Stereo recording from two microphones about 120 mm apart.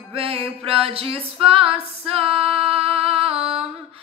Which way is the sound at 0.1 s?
50° right (ahead or behind).